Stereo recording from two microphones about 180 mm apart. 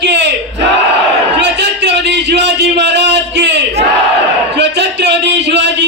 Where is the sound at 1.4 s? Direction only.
70° right (ahead or behind).